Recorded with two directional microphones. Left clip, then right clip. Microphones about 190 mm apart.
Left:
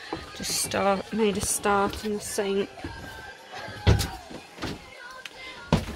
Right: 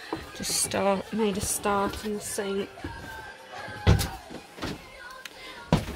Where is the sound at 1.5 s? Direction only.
15° left (ahead or behind).